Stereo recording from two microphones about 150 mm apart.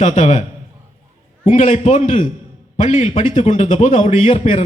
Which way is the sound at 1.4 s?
55° left (ahead or behind).